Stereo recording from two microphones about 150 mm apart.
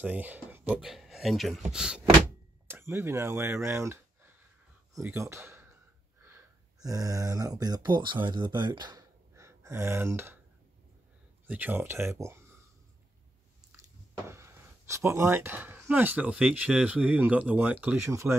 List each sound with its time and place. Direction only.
0.0 s speech: 10° right (ahead or behind)
2.7 s speech: 15° right (ahead or behind)
3.6 s a sound: 15° right (ahead or behind)
4.9 s speech: 20° right (ahead or behind)
9.3 s gasp: 20° right (ahead or behind)
11.4 s speech: 10° right (ahead or behind)
14.2 s speech: 20° right (ahead or behind)